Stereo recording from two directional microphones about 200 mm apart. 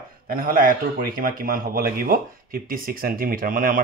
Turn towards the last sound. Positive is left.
turn(degrees=-45)  # may be behind; listen again after turning